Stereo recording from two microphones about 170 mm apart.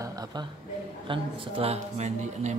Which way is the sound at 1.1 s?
35° right (ahead or behind).